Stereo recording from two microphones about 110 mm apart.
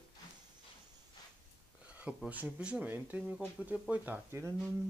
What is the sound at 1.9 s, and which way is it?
Speech, 10° right (ahead or behind).